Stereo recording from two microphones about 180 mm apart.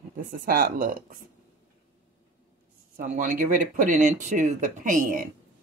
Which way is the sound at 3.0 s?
45° right (ahead or behind).